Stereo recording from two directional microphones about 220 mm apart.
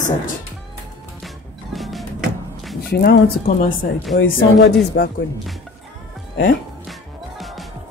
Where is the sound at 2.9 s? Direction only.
45° left (ahead or behind).